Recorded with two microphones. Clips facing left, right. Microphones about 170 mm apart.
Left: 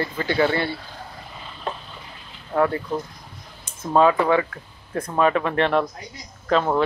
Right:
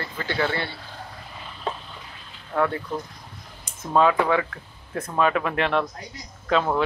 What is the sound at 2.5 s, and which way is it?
Speech, 25° left (ahead or behind).